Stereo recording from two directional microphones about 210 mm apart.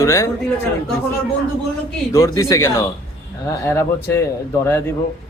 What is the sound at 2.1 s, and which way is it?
A man's voice, 15° left (ahead or behind).